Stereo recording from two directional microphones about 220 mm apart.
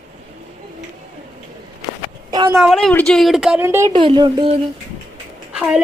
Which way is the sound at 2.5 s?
Centre (ahead or behind).